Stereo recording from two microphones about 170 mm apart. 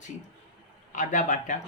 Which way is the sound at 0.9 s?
50° left (ahead or behind).